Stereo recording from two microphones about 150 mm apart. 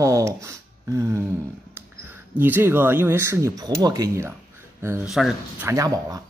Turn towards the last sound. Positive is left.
turn(degrees=-20)  # may be behind; listen again after turning